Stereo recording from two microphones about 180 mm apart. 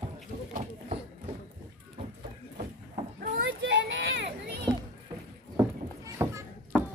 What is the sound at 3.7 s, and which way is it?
Children playing, 80° right.